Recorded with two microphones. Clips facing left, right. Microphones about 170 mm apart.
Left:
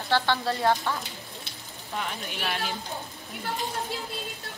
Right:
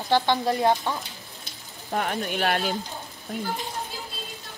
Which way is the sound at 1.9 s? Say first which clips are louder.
Right 7 dB; 55° right (ahead or behind).